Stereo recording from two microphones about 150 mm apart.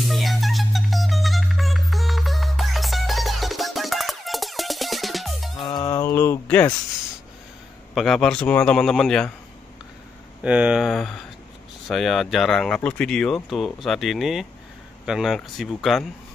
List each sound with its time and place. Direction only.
0.0 s music: centre (ahead or behind)
5.6 s a sound: 30° left (ahead or behind); by 6.7 s 15° left (ahead or behind)
7.9 s speech: centre (ahead or behind)
10.4 s speech: 10° right (ahead or behind)